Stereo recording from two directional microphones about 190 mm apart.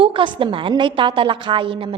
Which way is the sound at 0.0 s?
25° right (ahead or behind).